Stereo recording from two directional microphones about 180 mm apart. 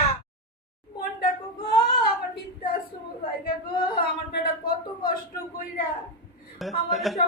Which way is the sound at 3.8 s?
55° left (ahead or behind).